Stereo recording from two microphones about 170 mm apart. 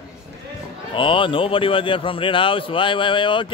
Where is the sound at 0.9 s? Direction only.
30° left (ahead or behind).